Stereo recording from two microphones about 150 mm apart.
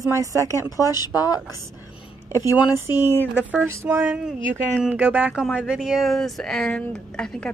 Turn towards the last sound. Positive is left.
turn(degrees=5)  # may be behind; listen again after turning